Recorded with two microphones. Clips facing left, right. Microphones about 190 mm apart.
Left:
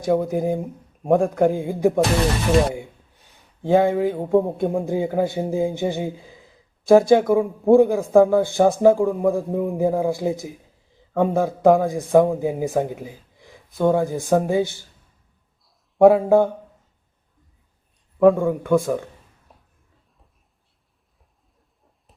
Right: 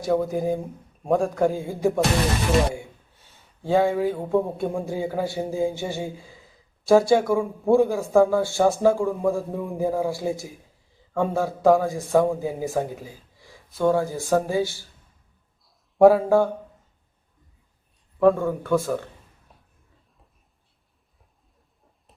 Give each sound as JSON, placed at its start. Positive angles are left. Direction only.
{"t": 0.0, "sound": "speech", "side_deg": 20}
{"t": 15.6, "sound": "a sound", "side_deg": 0}
{"t": 16.1, "sound": "speech", "side_deg": 20}
{"t": 18.2, "sound": "speech", "side_deg": 15}